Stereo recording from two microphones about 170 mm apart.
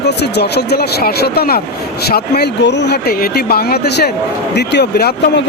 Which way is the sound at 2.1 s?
80° left.